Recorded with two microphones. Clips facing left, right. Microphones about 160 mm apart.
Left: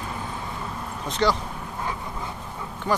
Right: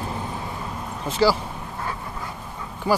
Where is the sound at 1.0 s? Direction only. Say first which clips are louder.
Right 3 dB; 5° right (ahead or behind).